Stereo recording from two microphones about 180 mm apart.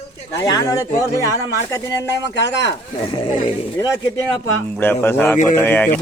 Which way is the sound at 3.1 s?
30° left (ahead or behind).